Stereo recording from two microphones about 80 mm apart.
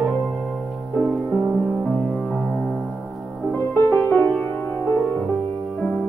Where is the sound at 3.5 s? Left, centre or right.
Left.